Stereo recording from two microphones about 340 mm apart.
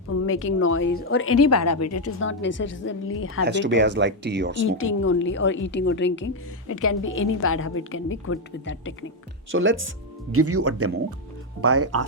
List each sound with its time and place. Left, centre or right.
0.3 s a woman's voice: left
3.4 s speech: right
4.8 s a woman's voice: left
9.5 s speech: right